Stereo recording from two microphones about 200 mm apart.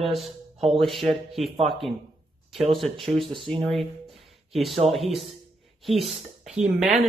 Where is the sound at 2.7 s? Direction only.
Centre (ahead or behind).